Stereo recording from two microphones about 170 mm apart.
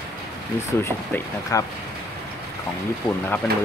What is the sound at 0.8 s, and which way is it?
Speech, 15° left (ahead or behind).